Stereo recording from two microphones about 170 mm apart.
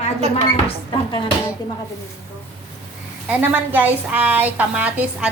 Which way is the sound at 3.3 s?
10° right (ahead or behind).